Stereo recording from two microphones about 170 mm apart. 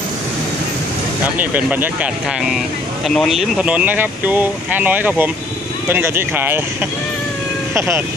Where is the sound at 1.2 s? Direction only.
10° right (ahead or behind).